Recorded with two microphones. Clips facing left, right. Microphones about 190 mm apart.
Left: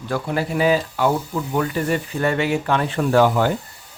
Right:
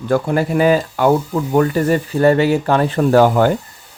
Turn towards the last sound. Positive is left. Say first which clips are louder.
# right 5 dB
turn(degrees=-50)  # may be behind; listen again after turning